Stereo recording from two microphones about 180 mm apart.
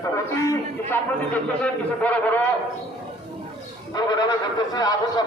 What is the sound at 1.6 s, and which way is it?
Speech, 10° left (ahead or behind).